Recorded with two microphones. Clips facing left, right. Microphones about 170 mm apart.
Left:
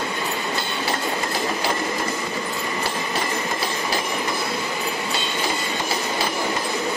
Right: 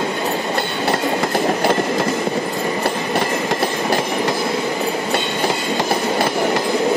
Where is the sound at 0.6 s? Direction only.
70° right (ahead or behind).